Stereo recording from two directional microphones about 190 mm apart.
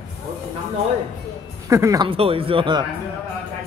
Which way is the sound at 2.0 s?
30° right (ahead or behind).